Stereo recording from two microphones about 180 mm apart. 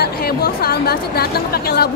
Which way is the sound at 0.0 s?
60° left (ahead or behind).